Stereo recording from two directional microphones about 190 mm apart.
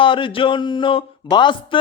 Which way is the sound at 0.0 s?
25° left (ahead or behind).